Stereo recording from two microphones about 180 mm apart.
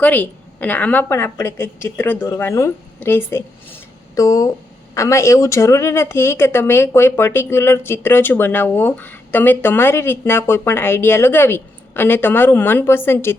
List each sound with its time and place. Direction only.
0.0 s speech: 10° left (ahead or behind)